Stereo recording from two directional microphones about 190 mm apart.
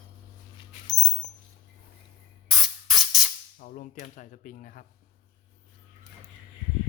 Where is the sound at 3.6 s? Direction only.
45° left (ahead or behind).